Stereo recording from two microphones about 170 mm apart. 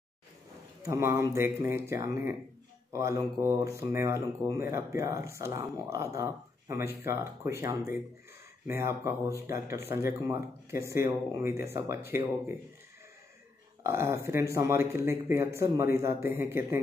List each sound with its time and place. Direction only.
0.8 s speech: 15° right (ahead or behind)
13.8 s speech: 15° right (ahead or behind)